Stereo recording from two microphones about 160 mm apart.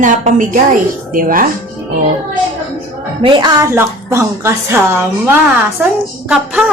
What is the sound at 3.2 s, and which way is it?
Speech, 30° right (ahead or behind).